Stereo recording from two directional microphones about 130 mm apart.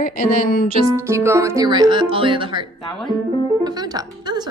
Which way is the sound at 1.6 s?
35° right (ahead or behind).